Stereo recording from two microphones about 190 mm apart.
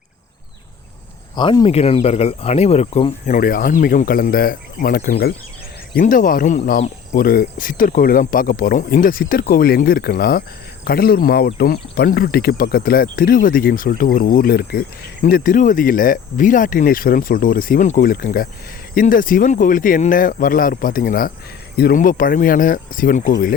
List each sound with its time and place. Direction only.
1.4 s speech: 25° left (ahead or behind); by 5.3 s 55° left (ahead or behind)
5.9 s speech: 45° left (ahead or behind)